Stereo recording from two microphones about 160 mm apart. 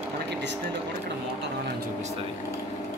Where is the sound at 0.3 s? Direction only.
90° right.